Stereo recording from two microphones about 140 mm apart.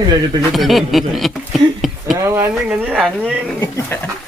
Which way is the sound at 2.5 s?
5° right (ahead or behind).